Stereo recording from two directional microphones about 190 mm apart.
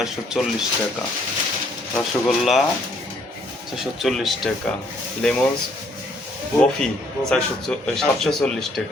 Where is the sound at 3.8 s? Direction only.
Centre (ahead or behind).